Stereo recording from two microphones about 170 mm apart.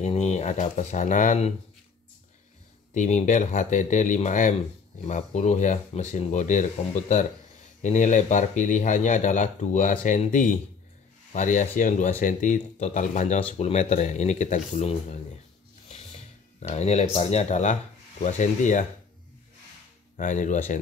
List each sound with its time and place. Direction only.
0.0 s speech: 40° left (ahead or behind)
2.9 s speech: 45° left (ahead or behind)
20.2 s speech: 50° left (ahead or behind)